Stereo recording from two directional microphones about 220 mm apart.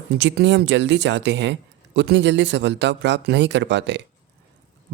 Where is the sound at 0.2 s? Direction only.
55° right (ahead or behind).